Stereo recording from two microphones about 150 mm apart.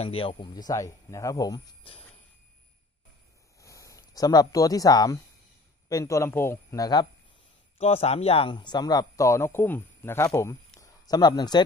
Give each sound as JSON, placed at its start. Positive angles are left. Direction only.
{"t": 0.0, "sound": "speech", "side_deg": 35}
{"t": 3.5, "sound": "speech", "side_deg": 20}
{"t": 7.8, "sound": "speech", "side_deg": 45}
{"t": 10.8, "sound": "a sound", "side_deg": 25}